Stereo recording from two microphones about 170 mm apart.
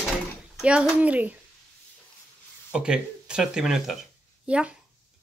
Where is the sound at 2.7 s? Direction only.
5° right (ahead or behind).